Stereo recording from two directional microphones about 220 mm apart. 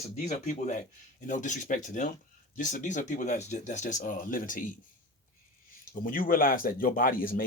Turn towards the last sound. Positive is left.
turn(degrees=40)  # may be behind; listen again after turning